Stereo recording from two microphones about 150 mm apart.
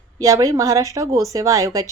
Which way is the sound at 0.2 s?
25° right (ahead or behind).